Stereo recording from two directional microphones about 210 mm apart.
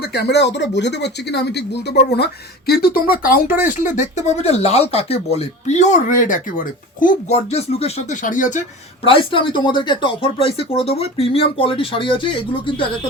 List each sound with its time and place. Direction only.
0.0 s speech: 50° left (ahead or behind)
9.0 s speech: 25° left (ahead or behind)